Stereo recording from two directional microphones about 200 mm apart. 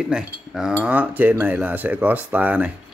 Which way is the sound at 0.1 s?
5° right (ahead or behind).